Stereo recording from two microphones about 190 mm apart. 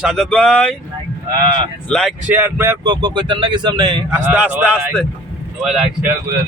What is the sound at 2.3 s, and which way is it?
Speech, 10° right (ahead or behind).